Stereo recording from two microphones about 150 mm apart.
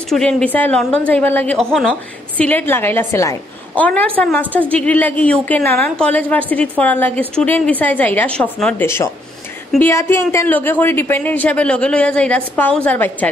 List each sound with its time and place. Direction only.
0.1 s a woman's voice: 5° left (ahead or behind)
8.8 s a woman's voice: 20° left (ahead or behind)